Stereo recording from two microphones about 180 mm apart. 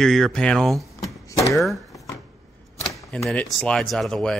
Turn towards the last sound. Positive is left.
turn(degrees=5)  # may be behind; listen again after turning